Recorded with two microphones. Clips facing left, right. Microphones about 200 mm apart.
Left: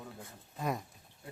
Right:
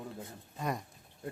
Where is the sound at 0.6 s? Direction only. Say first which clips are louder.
Even; centre (ahead or behind).